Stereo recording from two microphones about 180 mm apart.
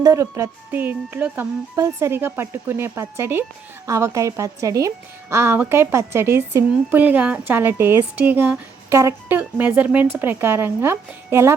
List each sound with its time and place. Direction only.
0.0 s a woman's voice: 15° right (ahead or behind)